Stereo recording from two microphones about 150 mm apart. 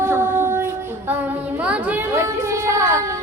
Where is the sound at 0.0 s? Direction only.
15° right (ahead or behind).